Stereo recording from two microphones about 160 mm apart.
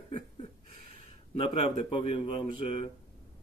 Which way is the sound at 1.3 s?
35° left (ahead or behind).